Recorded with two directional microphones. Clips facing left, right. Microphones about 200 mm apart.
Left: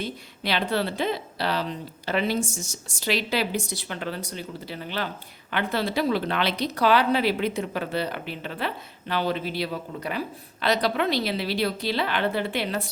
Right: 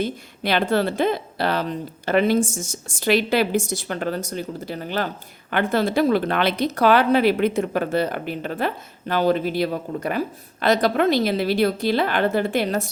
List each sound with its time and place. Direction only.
0.0 s speech: 50° right (ahead or behind)